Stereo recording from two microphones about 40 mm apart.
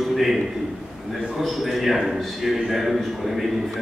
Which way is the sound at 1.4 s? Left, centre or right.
Centre.